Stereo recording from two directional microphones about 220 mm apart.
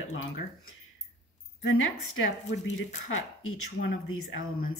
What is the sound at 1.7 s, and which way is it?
Speech, 65° left (ahead or behind).